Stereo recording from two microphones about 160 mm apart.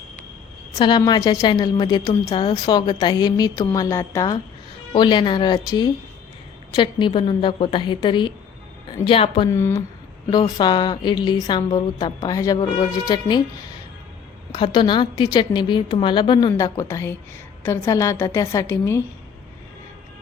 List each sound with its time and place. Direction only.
0.8 s a woman's voice: 25° left (ahead or behind)
9.5 s a woman's voice: 15° left (ahead or behind)
10.2 s a woman's voice: 25° left (ahead or behind)
14.5 s a woman's voice: 30° left (ahead or behind)